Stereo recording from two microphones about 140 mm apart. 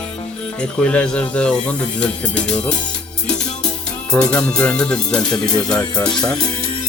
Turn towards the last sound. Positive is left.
turn(degrees=30)  # may be behind; listen again after turning